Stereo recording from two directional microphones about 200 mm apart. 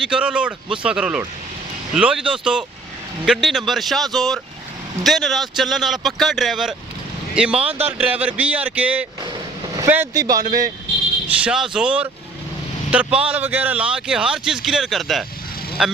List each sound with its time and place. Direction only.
0.0 s a man's voice: 5° right (ahead or behind)
10.4 s speech: 40° right (ahead or behind)
11.3 s a man's voice: 5° right (ahead or behind)